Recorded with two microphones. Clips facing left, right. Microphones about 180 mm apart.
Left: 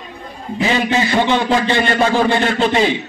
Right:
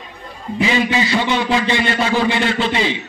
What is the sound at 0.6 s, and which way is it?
A man's voice, 45° left (ahead or behind).